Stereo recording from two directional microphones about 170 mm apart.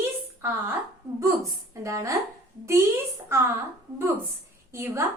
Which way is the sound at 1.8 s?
15° right (ahead or behind).